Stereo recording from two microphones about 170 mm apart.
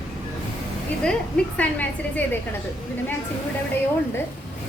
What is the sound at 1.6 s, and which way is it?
Speech, 10° left (ahead or behind).